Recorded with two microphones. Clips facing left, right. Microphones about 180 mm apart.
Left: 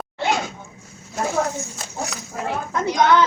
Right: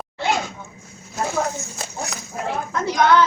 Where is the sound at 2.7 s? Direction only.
20° left (ahead or behind).